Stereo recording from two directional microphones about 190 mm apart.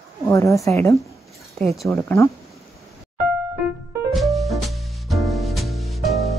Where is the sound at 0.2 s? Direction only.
15° left (ahead or behind).